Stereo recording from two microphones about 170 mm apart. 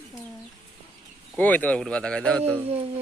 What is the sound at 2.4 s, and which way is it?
Speech, 10° right (ahead or behind).